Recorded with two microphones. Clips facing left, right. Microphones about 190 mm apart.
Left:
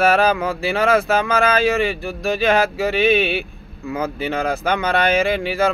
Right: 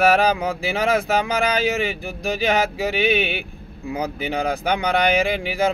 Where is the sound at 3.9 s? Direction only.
15° right (ahead or behind).